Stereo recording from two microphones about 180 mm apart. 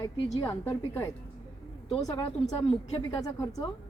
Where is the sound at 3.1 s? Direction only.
20° left (ahead or behind).